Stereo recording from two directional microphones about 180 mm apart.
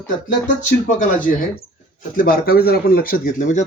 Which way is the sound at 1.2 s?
50° left (ahead or behind).